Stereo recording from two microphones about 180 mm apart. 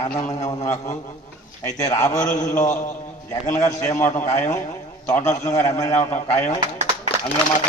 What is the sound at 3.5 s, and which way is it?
A man's voice, 15° left (ahead or behind).